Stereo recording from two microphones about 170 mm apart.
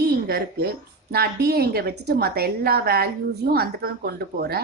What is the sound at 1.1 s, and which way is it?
Speech, 65° right (ahead or behind).